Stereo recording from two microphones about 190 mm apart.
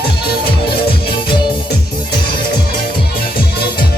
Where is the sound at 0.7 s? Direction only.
55° left (ahead or behind).